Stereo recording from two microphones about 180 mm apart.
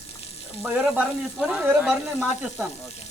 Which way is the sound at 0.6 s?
5° right (ahead or behind).